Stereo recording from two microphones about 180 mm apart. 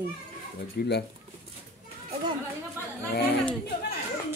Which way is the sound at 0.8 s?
60° left (ahead or behind).